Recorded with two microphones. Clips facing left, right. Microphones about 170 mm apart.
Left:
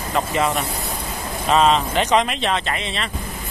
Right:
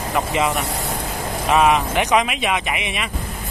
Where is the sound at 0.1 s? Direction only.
20° right (ahead or behind).